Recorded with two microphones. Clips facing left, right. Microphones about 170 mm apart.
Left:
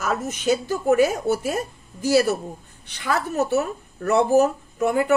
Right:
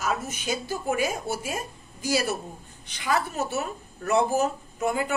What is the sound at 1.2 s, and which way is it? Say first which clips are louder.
Speech: left 9 dB; 65° left (ahead or behind).